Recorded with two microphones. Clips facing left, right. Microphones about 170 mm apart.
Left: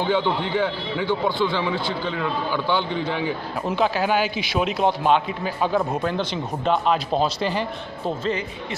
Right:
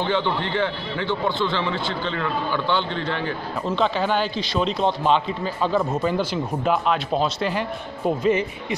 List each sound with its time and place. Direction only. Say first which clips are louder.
0.0 s speech: left 1 dB; 10° left (ahead or behind)
6.0 s speech: right 2 dB; 5° right (ahead or behind)
8.2 s speech: right 7 dB; 20° right (ahead or behind)